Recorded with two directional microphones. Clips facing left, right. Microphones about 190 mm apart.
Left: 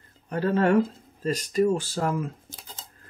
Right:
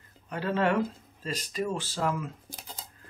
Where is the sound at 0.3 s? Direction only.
40° left (ahead or behind).